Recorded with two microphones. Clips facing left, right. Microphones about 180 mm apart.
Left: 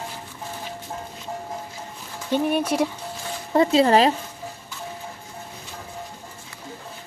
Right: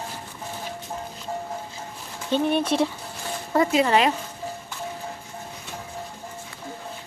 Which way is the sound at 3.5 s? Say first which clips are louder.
Left 3 dB; 25° left (ahead or behind).